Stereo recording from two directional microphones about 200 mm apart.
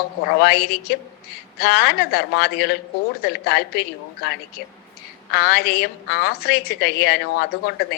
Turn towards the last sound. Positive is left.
turn(degrees=55)  # may be behind; listen again after turning